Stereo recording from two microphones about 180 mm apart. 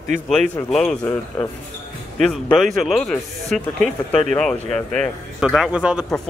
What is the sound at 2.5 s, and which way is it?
Speech, centre (ahead or behind).